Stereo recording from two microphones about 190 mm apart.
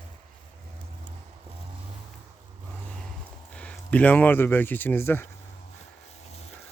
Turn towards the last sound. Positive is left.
turn(degrees=10)  # may be behind; listen again after turning